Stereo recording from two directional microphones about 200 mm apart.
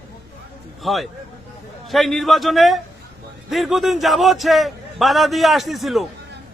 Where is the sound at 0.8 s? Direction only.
Centre (ahead or behind).